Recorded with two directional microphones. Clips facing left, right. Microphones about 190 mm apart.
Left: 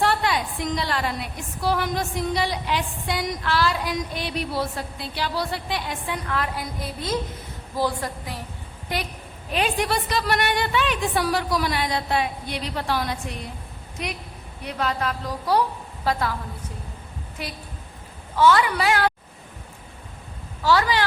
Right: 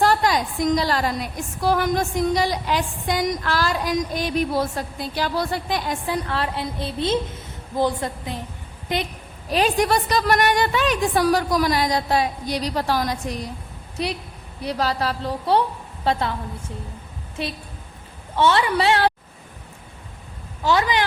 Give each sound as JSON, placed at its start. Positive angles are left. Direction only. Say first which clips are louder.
{"t": 0.0, "sound": "a woman's voice", "louder": "right 4 dB", "side_deg": -40}
{"t": 9.5, "sound": "a woman's voice", "louder": "right 4 dB", "side_deg": -35}
{"t": 18.3, "sound": "a woman's voice", "louder": "even", "side_deg": -25}
{"t": 20.6, "sound": "speech", "louder": "even", "side_deg": -20}